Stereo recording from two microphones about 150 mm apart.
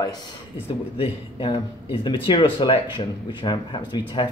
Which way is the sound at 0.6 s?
40° left (ahead or behind).